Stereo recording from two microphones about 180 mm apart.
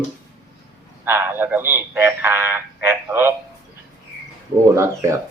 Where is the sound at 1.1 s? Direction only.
10° right (ahead or behind).